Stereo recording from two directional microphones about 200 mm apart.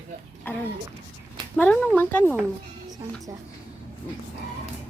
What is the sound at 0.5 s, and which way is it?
Speech, 10° left (ahead or behind).